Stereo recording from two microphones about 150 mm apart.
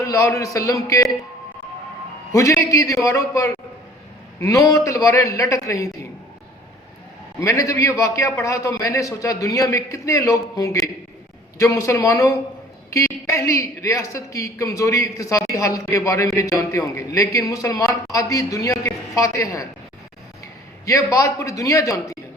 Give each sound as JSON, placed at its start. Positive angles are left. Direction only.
{"t": 0.0, "sound": "a woman's voice", "side_deg": 20}
{"t": 2.3, "sound": "a woman's voice", "side_deg": 20}
{"t": 7.3, "sound": "a woman's voice", "side_deg": 20}
{"t": 20.8, "sound": "a woman's voice", "side_deg": 20}